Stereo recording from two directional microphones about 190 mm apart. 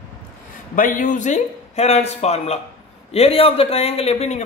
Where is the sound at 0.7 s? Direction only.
45° left (ahead or behind).